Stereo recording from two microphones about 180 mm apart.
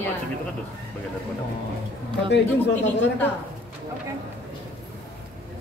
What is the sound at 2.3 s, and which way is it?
Speech, 75° left (ahead or behind).